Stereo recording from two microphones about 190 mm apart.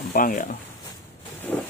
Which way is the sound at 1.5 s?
5° left (ahead or behind).